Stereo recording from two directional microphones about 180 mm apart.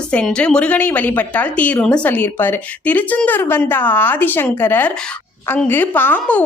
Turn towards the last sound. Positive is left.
turn(degrees=10)  # may be behind; listen again after turning